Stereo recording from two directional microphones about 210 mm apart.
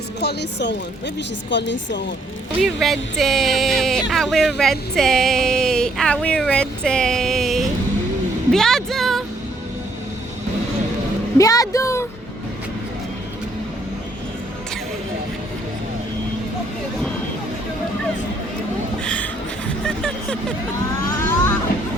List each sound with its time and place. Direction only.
0.2 s speech: 55° left (ahead or behind)
2.6 s speech: centre (ahead or behind)
11.3 s speech: 15° left (ahead or behind)
19.0 s a sound: 5° left (ahead or behind)